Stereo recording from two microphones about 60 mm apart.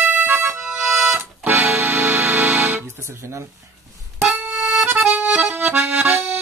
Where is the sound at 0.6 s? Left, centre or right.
Centre.